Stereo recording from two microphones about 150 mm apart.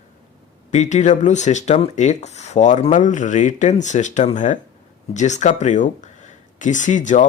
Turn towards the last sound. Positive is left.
turn(degrees=55)  # may be behind; listen again after turning